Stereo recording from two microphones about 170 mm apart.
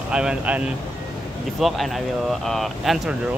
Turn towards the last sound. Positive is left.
turn(degrees=0)  # may be behind; listen again after turning